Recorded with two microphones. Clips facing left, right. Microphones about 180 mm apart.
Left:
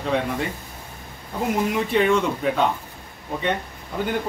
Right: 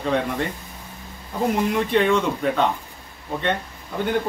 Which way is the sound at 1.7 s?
5° left (ahead or behind).